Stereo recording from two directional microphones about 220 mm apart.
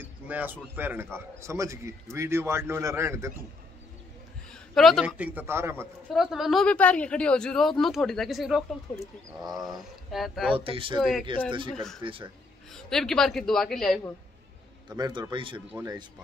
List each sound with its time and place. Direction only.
0.3 s a man's voice: 10° right (ahead or behind)
4.5 s a man's voice: centre (ahead or behind)
10.1 s speech: centre (ahead or behind)
10.5 s a man's voice: 25° right (ahead or behind)
11.0 s speech: centre (ahead or behind)
12.0 s a man's voice: 25° right (ahead or behind)
12.7 s speech: centre (ahead or behind)
14.9 s a man's voice: 20° right (ahead or behind)